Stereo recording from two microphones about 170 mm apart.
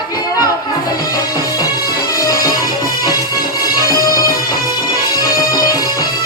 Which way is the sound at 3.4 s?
60° left (ahead or behind).